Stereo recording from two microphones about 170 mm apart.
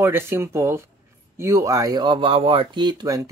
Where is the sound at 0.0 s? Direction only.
15° right (ahead or behind).